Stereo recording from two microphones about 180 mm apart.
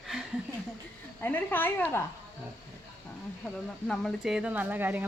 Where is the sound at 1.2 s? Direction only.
10° left (ahead or behind).